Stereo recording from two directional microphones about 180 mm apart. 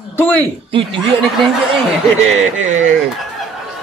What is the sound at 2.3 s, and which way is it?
Speech, 40° right (ahead or behind).